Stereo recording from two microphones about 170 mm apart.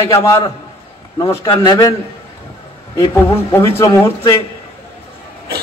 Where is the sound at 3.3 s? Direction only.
15° left (ahead or behind).